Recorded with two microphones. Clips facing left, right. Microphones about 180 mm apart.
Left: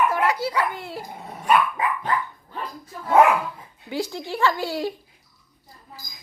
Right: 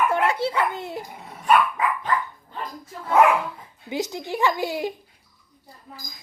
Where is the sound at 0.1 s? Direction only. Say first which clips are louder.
Right 1 dB; 25° right (ahead or behind).